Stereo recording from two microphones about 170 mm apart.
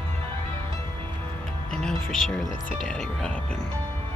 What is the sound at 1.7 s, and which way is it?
Music, 5° left (ahead or behind).